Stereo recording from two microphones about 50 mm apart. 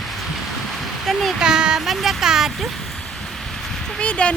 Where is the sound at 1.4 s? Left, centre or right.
Centre.